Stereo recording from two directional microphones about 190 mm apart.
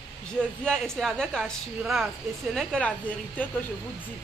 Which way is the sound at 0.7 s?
5° left (ahead or behind).